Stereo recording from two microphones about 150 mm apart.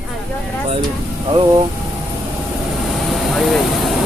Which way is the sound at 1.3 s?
25° right (ahead or behind).